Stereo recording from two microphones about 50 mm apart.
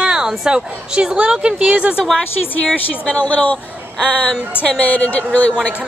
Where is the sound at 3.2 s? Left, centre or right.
Left.